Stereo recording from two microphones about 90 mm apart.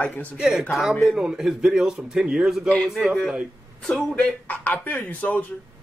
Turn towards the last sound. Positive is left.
turn(degrees=20)  # may be behind; listen again after turning